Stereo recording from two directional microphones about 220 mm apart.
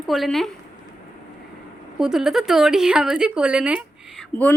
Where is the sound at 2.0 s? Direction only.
Centre (ahead or behind).